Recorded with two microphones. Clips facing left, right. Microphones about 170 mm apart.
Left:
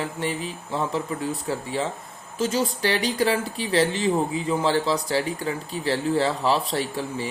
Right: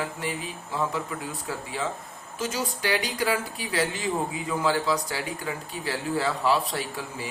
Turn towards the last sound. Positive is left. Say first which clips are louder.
# left 6 dB
turn(degrees=30)  # may be behind; listen again after turning